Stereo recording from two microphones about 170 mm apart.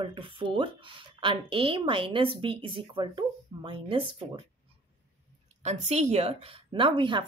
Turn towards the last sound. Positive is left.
turn(degrees=-30)  # may be behind; listen again after turning